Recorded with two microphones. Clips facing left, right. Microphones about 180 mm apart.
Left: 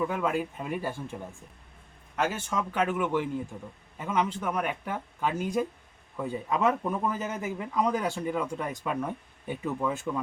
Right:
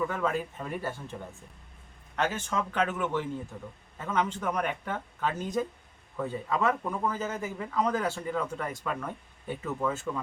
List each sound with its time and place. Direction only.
0.1 s speech: 10° left (ahead or behind)
2.1 s speech: 10° left (ahead or behind)